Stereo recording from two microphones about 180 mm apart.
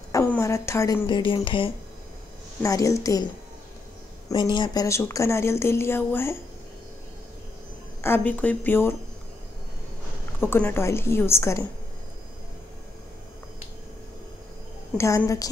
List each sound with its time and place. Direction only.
0.1 s a woman's voice: 15° left (ahead or behind)
1.0 s speech: 25° left (ahead or behind)
2.6 s speech: 15° left (ahead or behind)
4.6 s speech: 20° left (ahead or behind)
8.0 s speech: 10° left (ahead or behind)
10.4 s speech: 10° left (ahead or behind)
15.0 s speech: 15° left (ahead or behind)